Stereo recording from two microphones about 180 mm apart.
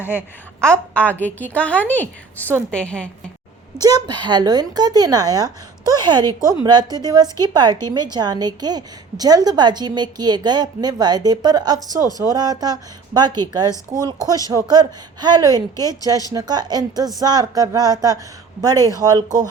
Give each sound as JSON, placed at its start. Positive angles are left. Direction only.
{"t": 0.6, "sound": "a woman's voice", "side_deg": 5}
{"t": 3.8, "sound": "speech", "side_deg": -20}